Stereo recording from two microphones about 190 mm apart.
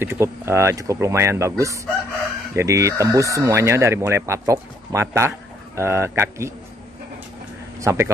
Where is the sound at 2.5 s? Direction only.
15° right (ahead or behind).